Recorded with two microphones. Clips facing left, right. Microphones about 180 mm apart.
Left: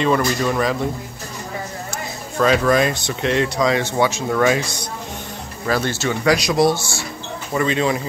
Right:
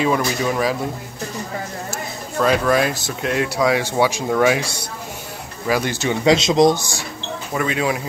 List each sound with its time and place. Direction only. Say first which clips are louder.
0.0 s speech: left 1 dB; 5° right (ahead or behind)
2.3 s speech: left 1 dB; 5° right (ahead or behind)
7.5 s speech: left 2 dB; 5° right (ahead or behind)